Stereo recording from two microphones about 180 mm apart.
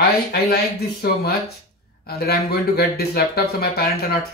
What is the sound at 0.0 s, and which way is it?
Speech, 60° left (ahead or behind).